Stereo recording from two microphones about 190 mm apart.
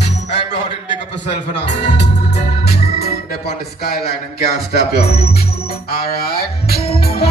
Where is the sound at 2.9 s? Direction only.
55° left (ahead or behind).